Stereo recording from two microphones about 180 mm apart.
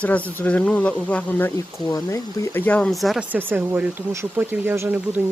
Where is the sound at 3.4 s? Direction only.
10° right (ahead or behind).